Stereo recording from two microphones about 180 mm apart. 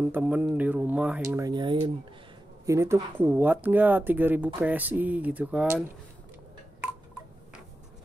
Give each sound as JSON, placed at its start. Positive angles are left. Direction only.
{"t": 0.0, "sound": "speech", "side_deg": -10}